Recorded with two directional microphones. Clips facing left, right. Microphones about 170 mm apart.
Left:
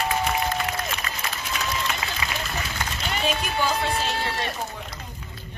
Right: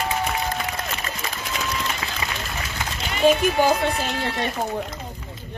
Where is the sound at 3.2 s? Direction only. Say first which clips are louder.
Right 9 dB; 50° right (ahead or behind).